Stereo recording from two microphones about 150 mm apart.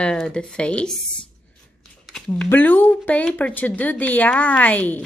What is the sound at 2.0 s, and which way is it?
Speech, 5° left (ahead or behind).